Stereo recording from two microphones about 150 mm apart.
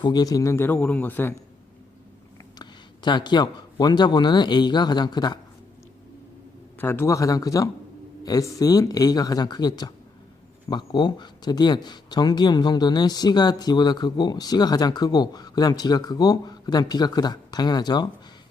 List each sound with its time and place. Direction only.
0.0 s a man's voice: 25° left (ahead or behind)
2.6 s speech: 30° left (ahead or behind)
6.7 s speech: 15° left (ahead or behind)